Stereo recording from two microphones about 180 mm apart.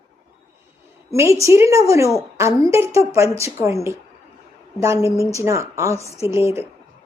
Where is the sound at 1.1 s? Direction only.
15° right (ahead or behind).